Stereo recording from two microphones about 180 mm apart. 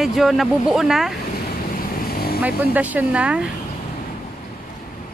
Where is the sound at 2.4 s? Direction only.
10° right (ahead or behind).